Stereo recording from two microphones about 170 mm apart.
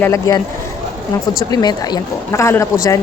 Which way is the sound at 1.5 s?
25° left (ahead or behind).